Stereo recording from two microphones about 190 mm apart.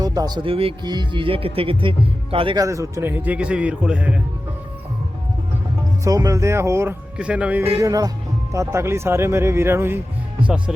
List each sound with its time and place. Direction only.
0.0 s speech: 20° right (ahead or behind)
2.6 s speech: 15° right (ahead or behind)
6.1 s speech: 15° right (ahead or behind)